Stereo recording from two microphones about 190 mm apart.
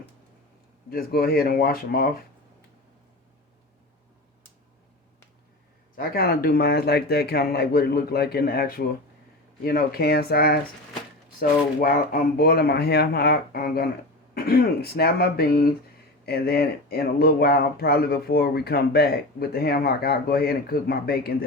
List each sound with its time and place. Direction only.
0.9 s speech: 50° left (ahead or behind)
6.0 s speech: 50° left (ahead or behind)